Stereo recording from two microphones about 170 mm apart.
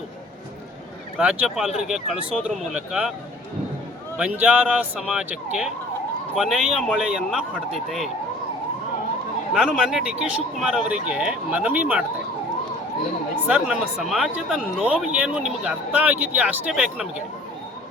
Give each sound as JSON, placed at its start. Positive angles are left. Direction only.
{"t": 1.2, "sound": "speech", "side_deg": -5}
{"t": 4.2, "sound": "speech", "side_deg": -10}
{"t": 9.6, "sound": "speech", "side_deg": -5}
{"t": 13.5, "sound": "speech", "side_deg": -5}